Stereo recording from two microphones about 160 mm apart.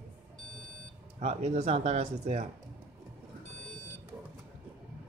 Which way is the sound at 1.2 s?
45° right (ahead or behind).